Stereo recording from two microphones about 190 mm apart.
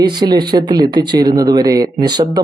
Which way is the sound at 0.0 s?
20° right (ahead or behind).